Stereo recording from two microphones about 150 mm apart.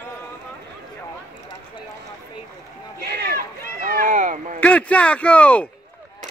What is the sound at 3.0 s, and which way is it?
Run, 90° right.